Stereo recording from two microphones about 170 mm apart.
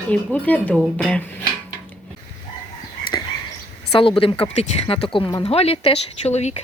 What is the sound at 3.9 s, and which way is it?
Speech, 30° left (ahead or behind).